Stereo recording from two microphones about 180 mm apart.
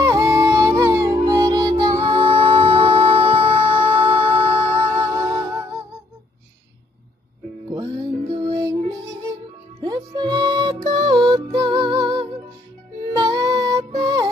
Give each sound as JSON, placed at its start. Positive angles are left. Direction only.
{"t": 0.0, "sound": "music", "side_deg": -15}
{"t": 3.8, "sound": "music", "side_deg": -10}
{"t": 8.4, "sound": "music", "side_deg": -20}